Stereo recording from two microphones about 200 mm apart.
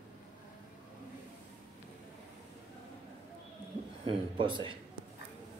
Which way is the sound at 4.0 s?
25° right (ahead or behind).